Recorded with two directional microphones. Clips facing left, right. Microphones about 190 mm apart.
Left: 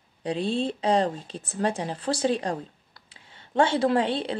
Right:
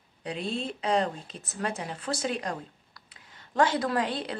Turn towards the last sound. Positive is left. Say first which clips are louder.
# left 6 dB
turn(degrees=25)  # may be behind; listen again after turning